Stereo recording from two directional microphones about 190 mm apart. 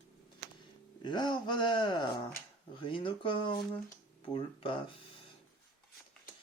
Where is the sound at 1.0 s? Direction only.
25° left (ahead or behind).